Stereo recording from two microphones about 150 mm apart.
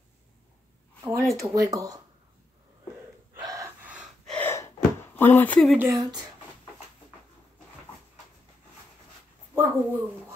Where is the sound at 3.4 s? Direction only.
20° right (ahead or behind).